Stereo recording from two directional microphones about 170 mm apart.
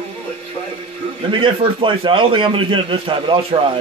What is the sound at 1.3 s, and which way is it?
A man's voice, 30° right (ahead or behind).